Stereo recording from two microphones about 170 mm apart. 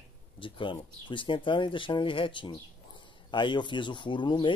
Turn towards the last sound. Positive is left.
turn(degrees=30)  # may be behind; listen again after turning